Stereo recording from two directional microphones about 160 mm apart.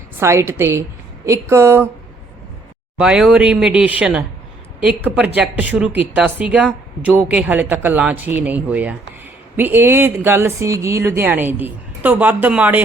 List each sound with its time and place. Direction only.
0.2 s speech: 15° right (ahead or behind)
3.0 s speech: 5° right (ahead or behind)